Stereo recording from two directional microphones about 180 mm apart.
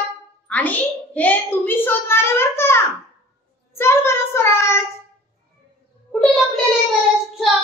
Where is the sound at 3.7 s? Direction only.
15° left (ahead or behind).